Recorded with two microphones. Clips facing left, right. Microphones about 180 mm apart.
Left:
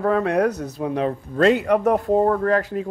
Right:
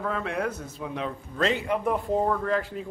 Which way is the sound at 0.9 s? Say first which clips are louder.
Left 8 dB; 50° left (ahead or behind).